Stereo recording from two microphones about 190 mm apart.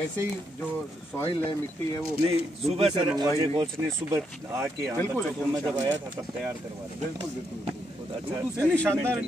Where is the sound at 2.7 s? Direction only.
30° right (ahead or behind); by 5.9 s 10° right (ahead or behind).